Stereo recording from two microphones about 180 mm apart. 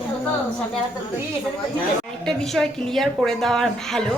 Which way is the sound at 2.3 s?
5° left (ahead or behind).